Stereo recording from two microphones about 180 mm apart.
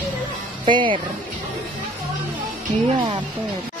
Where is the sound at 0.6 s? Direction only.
25° right (ahead or behind).